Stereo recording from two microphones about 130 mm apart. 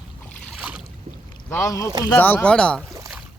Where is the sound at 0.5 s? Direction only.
10° right (ahead or behind).